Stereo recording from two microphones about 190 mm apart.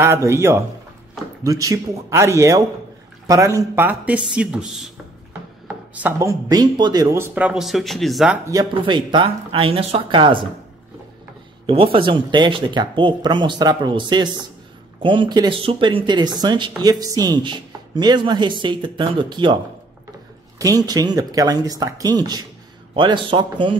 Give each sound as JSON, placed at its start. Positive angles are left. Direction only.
{"t": 0.0, "sound": "speech", "side_deg": -15}
{"t": 8.5, "sound": "speech", "side_deg": -20}
{"t": 11.6, "sound": "speech", "side_deg": -30}